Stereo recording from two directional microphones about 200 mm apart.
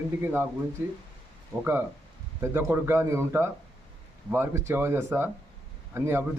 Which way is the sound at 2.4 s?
10° right (ahead or behind).